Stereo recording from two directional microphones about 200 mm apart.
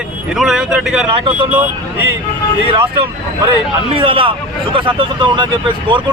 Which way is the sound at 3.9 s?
25° right (ahead or behind).